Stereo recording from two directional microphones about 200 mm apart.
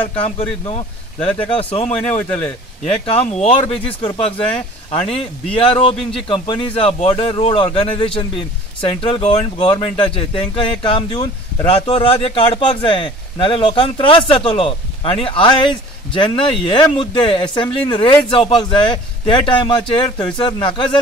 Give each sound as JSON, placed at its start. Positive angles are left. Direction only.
{"t": 0.1, "sound": "speech", "side_deg": 25}
{"t": 1.9, "sound": "a man's voice", "side_deg": 10}
{"t": 2.9, "sound": "speech", "side_deg": 30}